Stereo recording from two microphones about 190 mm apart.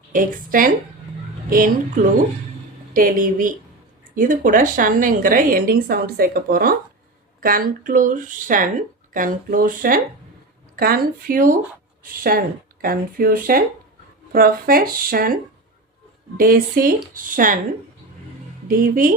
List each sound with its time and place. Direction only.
0.1 s a woman's voice: 45° right (ahead or behind)
2.9 s a woman's voice: 45° right (ahead or behind)
16.4 s a woman's voice: 50° right (ahead or behind)
18.7 s a woman's voice: 45° right (ahead or behind)